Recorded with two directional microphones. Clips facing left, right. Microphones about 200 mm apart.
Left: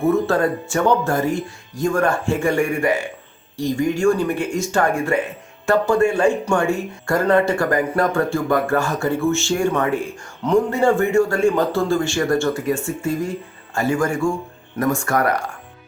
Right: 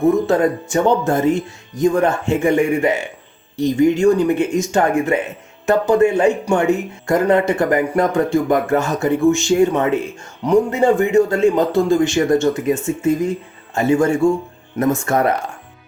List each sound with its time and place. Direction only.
0.0 s speech: 15° right (ahead or behind)